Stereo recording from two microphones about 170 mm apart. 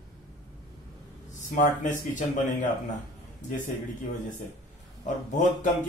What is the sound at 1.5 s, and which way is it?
Speech, 50° left (ahead or behind).